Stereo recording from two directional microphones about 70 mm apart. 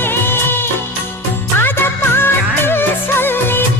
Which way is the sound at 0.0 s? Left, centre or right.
Left.